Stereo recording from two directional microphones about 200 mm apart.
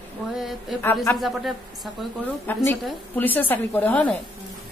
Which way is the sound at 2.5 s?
10° left (ahead or behind).